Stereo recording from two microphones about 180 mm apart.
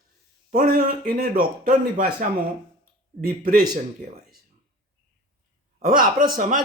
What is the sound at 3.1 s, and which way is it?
Speech, 50° right (ahead or behind).